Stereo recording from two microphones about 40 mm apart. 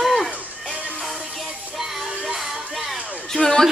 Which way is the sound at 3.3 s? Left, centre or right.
Centre.